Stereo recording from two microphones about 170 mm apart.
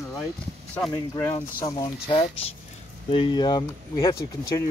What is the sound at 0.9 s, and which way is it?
Speech, 20° left (ahead or behind).